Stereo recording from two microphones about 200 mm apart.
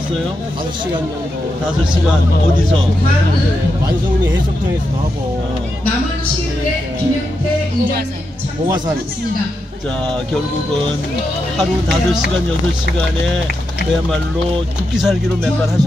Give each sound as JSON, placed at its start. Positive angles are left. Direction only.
{"t": 8.6, "sound": "speech", "side_deg": -20}
{"t": 15.0, "sound": "speech", "side_deg": 0}